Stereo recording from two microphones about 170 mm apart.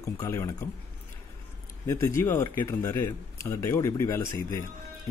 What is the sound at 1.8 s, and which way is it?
Speech, 15° left (ahead or behind).